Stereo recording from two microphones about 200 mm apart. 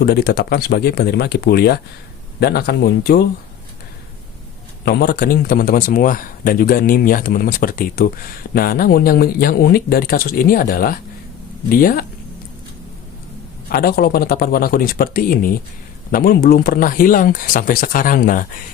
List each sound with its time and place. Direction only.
0.0 s a man's voice: 50° left (ahead or behind)
4.9 s a man's voice: 50° left (ahead or behind)
13.7 s a man's voice: 50° left (ahead or behind)